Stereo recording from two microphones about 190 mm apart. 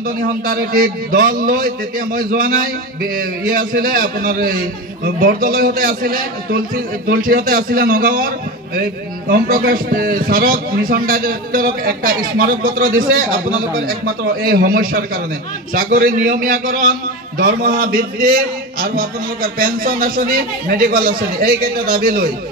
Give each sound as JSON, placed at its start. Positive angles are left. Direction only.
{"t": 0.5, "sound": "a man's voice", "side_deg": -50}
{"t": 9.3, "sound": "a man's voice", "side_deg": -50}